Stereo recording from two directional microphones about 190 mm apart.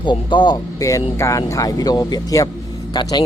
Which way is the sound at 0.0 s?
25° left (ahead or behind).